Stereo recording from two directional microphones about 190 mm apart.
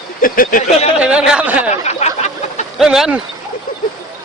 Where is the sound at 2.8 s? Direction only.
5° right (ahead or behind).